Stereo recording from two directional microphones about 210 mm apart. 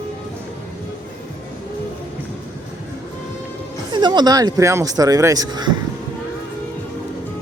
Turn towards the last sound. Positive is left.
turn(degrees=-20)  # may be behind; listen again after turning